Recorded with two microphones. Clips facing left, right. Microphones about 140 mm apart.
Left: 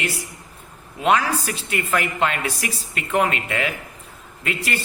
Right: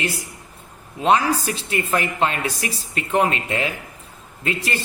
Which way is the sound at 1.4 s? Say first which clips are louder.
Right 2 dB; 30° right (ahead or behind).